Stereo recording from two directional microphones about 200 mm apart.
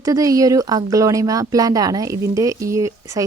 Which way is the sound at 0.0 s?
15° right (ahead or behind).